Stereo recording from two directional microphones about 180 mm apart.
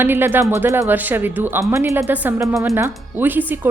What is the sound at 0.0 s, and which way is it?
A woman's voice, 10° right (ahead or behind).